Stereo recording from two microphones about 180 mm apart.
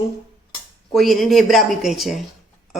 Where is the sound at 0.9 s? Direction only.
Centre (ahead or behind).